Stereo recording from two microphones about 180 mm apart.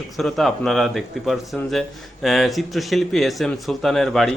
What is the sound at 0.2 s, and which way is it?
Speech, centre (ahead or behind).